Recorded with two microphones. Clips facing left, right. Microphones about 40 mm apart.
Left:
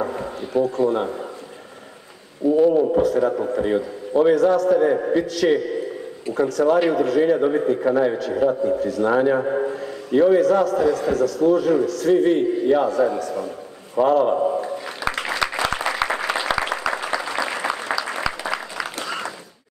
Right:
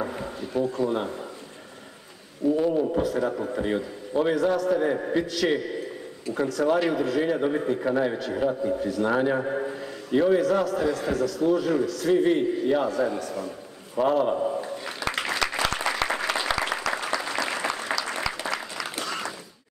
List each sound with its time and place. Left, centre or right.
0.0 s a sound: centre
0.5 s a man's voice: centre
2.7 s a man's voice: centre
3.0 s a man's voice: centre
8.7 s a man's voice: centre
9.0 s a man's voice: centre
14.3 s a man's voice: centre
14.6 s a sound: centre
15.5 s applause: centre